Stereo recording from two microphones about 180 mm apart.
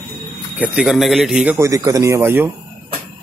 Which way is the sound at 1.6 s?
20° right (ahead or behind).